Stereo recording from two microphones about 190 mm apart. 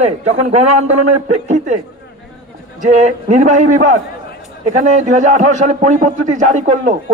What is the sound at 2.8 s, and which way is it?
A man's voice, 40° right (ahead or behind).